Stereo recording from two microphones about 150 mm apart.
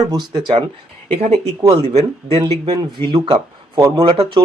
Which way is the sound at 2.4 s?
35° right (ahead or behind).